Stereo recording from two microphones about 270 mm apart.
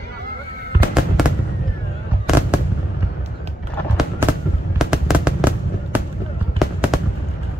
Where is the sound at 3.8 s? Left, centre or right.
Centre.